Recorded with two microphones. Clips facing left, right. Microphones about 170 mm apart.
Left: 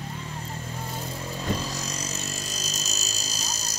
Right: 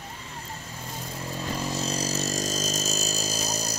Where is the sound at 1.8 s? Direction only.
30° right (ahead or behind).